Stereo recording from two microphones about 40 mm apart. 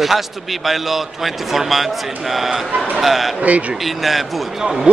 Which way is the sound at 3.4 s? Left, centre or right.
Right.